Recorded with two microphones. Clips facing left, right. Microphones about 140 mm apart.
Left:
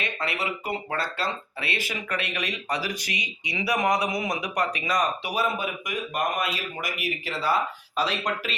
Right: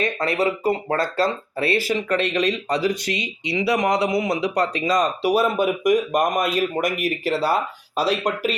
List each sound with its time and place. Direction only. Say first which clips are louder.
0.0 s speech: right 9 dB; 40° right (ahead or behind)
5.8 s speech: right 11 dB; 45° right (ahead or behind)